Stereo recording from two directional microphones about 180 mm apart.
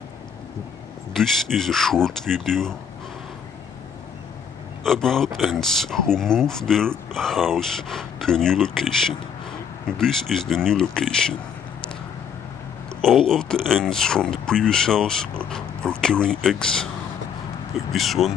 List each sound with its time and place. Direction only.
1.1 s speech: centre (ahead or behind)
4.8 s speech: 5° left (ahead or behind)
13.0 s speech: 5° left (ahead or behind)
17.9 s speech: centre (ahead or behind)